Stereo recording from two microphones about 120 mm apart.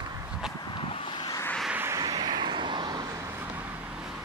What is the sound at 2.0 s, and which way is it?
Vehicle, 35° right (ahead or behind).